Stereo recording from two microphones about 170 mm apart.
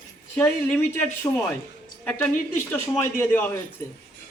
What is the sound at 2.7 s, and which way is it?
Speech, 10° left (ahead or behind).